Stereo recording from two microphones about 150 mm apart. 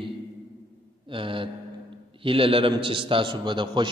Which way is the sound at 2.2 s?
35° right (ahead or behind).